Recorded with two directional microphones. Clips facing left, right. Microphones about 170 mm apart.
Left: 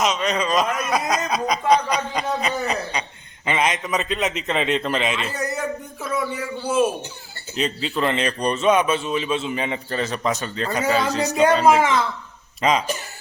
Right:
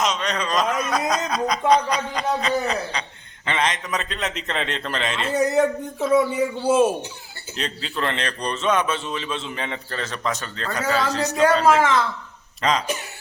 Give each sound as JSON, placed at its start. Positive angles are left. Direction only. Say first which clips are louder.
{"t": 0.0, "sound": "a man's voice", "louder": "left 2 dB", "side_deg": 5}
{"t": 5.3, "sound": "speech", "louder": "right 7 dB", "side_deg": -25}
{"t": 7.5, "sound": "a man's voice", "louder": "left 5 dB", "side_deg": 5}